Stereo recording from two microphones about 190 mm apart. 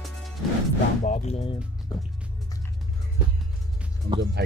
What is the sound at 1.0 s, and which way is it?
Music, 35° left (ahead or behind).